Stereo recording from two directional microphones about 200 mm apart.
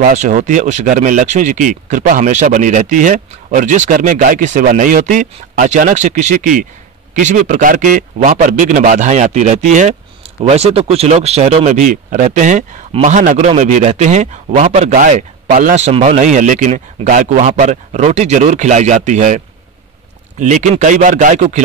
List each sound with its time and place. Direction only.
0.0 s speech: 40° right (ahead or behind)